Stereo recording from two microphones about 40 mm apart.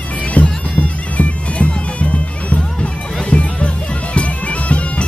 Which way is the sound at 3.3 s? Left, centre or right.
Left.